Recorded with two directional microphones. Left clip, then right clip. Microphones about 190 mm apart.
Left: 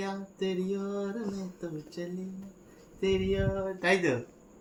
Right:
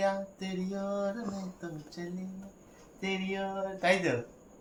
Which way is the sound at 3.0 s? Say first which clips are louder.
Left 6 dB; 35° right (ahead or behind).